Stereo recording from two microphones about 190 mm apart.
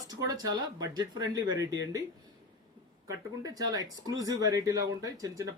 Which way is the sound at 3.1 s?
20° right (ahead or behind).